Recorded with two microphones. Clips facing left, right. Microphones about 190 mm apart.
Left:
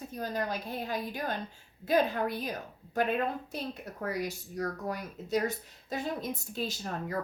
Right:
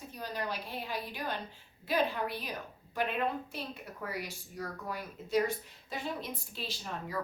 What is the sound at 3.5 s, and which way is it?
Speech, 45° left (ahead or behind).